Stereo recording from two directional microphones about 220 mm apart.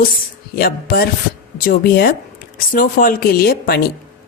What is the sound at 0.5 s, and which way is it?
Speech, 45° left (ahead or behind).